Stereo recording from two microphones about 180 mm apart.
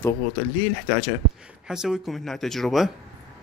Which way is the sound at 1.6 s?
5° right (ahead or behind).